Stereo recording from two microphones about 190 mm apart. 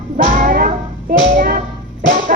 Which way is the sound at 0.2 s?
45° right (ahead or behind).